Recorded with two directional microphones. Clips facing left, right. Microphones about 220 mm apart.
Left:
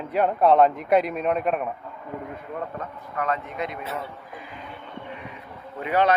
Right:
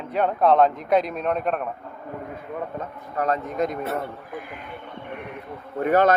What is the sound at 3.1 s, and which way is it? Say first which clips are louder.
Speech: right 3 dB; 40° right (ahead or behind).